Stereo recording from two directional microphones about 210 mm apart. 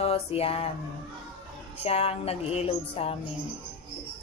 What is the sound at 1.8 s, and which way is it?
Speech, 30° left (ahead or behind).